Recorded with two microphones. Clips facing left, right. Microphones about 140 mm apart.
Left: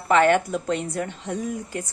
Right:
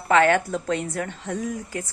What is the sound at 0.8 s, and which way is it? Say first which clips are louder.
Speech: left 1 dB; 25° left (ahead or behind).